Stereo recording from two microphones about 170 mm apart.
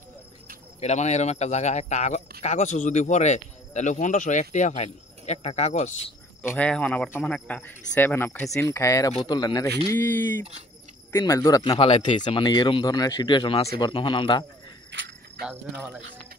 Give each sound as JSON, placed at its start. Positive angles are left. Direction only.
{"t": 0.7, "sound": "speech", "side_deg": 40}
{"t": 6.4, "sound": "speech", "side_deg": 10}
{"t": 9.9, "sound": "speech", "side_deg": 10}
{"t": 11.8, "sound": "speech", "side_deg": 35}
{"t": 14.9, "sound": "cricket", "side_deg": -90}
{"t": 15.4, "sound": "speech", "side_deg": -10}